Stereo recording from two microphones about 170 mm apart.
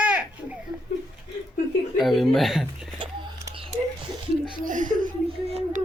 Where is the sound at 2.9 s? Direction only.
30° right (ahead or behind).